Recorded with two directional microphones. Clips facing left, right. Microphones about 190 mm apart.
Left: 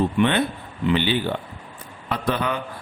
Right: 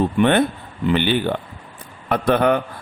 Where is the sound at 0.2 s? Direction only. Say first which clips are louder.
Right 4 dB; 50° right (ahead or behind).